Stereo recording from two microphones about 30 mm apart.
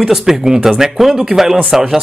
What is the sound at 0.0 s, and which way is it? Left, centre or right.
Speech, centre.